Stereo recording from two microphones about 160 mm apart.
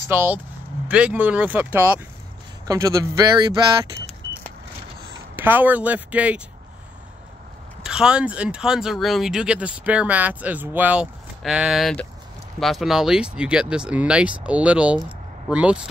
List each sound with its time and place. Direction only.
0.1 s speech: 10° right (ahead or behind)
2.6 s speech: 20° right (ahead or behind)
5.3 s speech: 10° right (ahead or behind)
7.8 s speech: 5° right (ahead or behind)